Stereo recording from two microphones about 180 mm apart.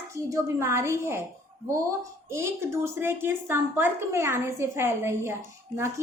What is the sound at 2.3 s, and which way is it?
A woman's voice, 15° right (ahead or behind).